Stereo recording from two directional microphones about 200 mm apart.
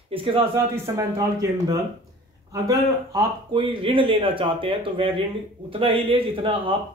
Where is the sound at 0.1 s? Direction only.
25° right (ahead or behind).